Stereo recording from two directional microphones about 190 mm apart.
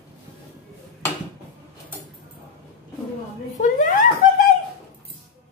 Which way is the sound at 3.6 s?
45° left (ahead or behind).